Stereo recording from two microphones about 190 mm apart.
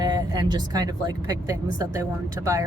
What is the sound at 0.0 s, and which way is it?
Speech, 20° right (ahead or behind).